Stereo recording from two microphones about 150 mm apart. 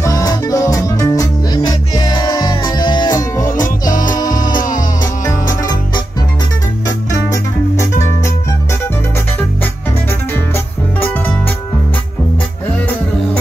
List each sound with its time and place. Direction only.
0.0 s music: 25° left (ahead or behind)
10.3 s music: 15° left (ahead or behind)
12.7 s music: 10° left (ahead or behind)